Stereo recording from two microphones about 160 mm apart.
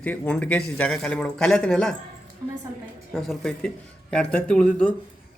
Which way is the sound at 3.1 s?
Centre (ahead or behind).